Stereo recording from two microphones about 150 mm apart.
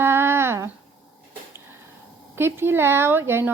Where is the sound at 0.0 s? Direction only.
15° right (ahead or behind).